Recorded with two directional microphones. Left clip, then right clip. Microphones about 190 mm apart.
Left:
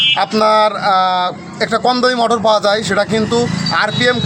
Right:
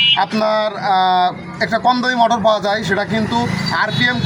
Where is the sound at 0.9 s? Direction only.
35° left (ahead or behind).